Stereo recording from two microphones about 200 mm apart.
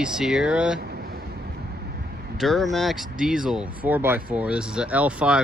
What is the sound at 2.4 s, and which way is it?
Speech, centre (ahead or behind).